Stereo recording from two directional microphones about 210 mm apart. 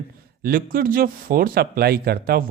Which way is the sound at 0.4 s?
45° right (ahead or behind).